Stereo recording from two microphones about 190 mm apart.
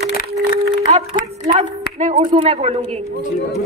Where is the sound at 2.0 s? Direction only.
35° right (ahead or behind).